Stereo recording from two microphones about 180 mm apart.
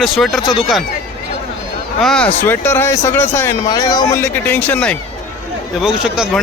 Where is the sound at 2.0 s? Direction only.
5° left (ahead or behind).